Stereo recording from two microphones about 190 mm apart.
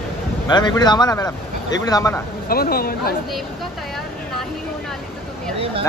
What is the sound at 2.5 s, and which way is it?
Speech, 50° left (ahead or behind).